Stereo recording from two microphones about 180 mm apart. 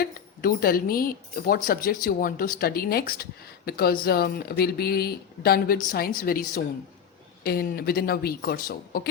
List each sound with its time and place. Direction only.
0.0 s speech: 55° left (ahead or behind)